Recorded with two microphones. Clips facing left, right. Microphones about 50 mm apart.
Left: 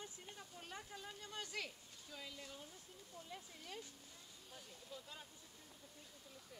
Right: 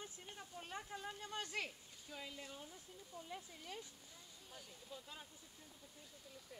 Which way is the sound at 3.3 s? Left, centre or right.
Centre.